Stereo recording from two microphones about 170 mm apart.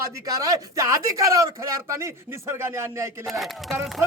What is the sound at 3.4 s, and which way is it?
Speech, centre (ahead or behind).